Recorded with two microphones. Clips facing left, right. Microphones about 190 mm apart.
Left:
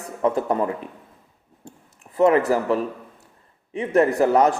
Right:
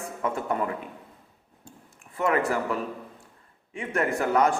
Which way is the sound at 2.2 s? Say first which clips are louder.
Left 8 dB; 35° left (ahead or behind).